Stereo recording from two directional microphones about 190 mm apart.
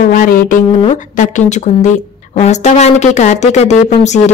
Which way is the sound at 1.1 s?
40° left (ahead or behind).